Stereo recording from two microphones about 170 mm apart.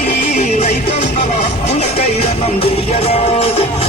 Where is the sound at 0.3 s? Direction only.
40° left (ahead or behind).